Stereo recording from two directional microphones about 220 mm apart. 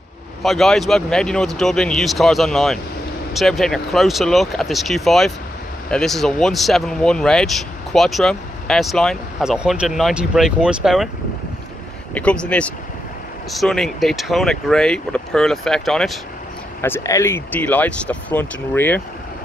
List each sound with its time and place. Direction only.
0.4 s speech: centre (ahead or behind)
12.1 s speech: 5° left (ahead or behind)
16.8 s speech: 10° left (ahead or behind)